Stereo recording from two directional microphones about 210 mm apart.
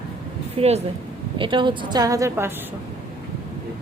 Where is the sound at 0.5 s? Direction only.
30° right (ahead or behind); by 2.5 s 10° right (ahead or behind).